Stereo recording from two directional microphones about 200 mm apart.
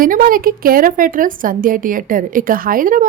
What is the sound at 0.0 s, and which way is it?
A woman's voice, 45° right (ahead or behind).